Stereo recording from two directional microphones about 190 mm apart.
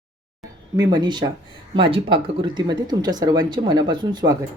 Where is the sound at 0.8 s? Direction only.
20° right (ahead or behind).